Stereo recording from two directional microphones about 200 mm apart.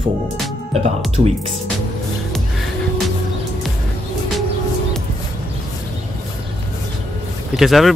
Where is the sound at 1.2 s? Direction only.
40° right (ahead or behind).